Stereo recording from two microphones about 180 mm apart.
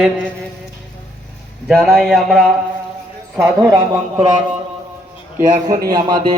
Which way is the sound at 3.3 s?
15° right (ahead or behind).